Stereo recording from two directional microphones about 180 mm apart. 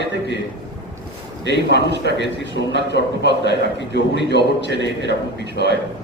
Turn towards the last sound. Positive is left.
turn(degrees=70)  # may be behind; listen again after turning